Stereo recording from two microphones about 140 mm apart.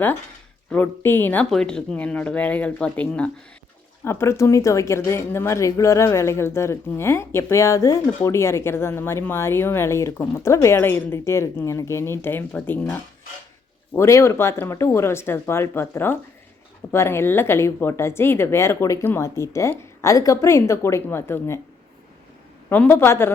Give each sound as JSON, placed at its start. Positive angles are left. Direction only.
{"t": 0.7, "sound": "a woman's voice", "side_deg": 15}
{"t": 22.7, "sound": "speech", "side_deg": 15}